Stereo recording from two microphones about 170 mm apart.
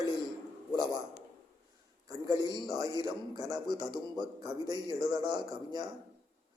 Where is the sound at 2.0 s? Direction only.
20° right (ahead or behind).